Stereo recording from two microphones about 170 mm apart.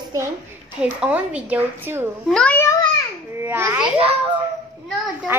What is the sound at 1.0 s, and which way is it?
A woman's voice, 10° right (ahead or behind).